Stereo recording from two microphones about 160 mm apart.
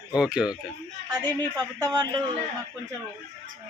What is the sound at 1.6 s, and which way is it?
Speech, 25° right (ahead or behind).